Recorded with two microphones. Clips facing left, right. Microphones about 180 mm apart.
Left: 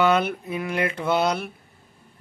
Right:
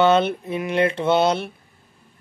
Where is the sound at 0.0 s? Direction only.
25° right (ahead or behind).